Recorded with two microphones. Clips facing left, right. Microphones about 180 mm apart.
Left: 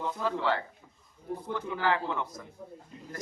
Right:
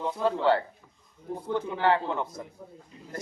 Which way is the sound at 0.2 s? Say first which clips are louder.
Right 7 dB; 30° right (ahead or behind).